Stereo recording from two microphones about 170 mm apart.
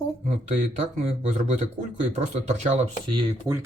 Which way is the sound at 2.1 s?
45° right (ahead or behind).